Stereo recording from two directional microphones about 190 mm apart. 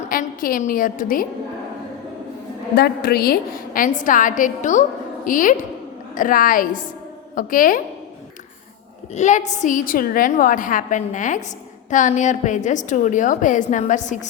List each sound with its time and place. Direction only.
0.1 s a woman's voice: 50° left (ahead or behind)
2.7 s a woman's voice: 55° left (ahead or behind)
9.1 s a woman's voice: 40° left (ahead or behind)